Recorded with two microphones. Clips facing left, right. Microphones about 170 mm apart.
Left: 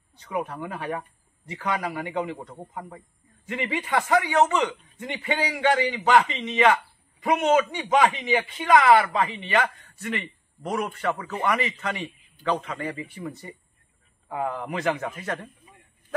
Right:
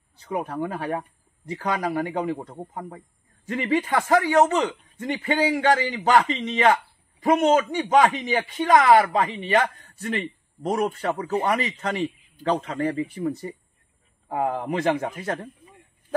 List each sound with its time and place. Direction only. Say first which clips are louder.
0.2 s speech: right 3 dB; 35° right (ahead or behind)